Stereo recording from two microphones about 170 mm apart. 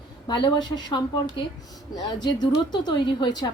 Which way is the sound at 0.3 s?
25° left (ahead or behind).